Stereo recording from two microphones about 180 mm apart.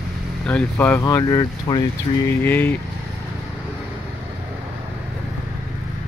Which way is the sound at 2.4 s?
10° left (ahead or behind).